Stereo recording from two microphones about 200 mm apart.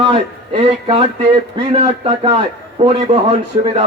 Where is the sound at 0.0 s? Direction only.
30° right (ahead or behind).